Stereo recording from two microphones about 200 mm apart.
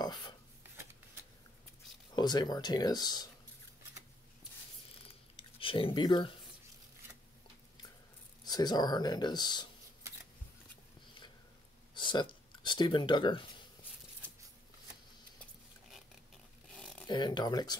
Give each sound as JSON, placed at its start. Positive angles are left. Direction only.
{"t": 0.0, "sound": "a sound", "side_deg": 20}
{"t": 2.1, "sound": "speech", "side_deg": 20}
{"t": 5.3, "sound": "a sound", "side_deg": 25}
{"t": 8.5, "sound": "speech", "side_deg": 20}
{"t": 11.9, "sound": "speech", "side_deg": 25}
{"t": 16.7, "sound": "zipper", "side_deg": 0}
{"t": 17.1, "sound": "speech", "side_deg": 20}